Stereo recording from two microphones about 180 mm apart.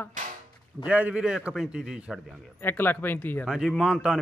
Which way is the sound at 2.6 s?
10° left (ahead or behind).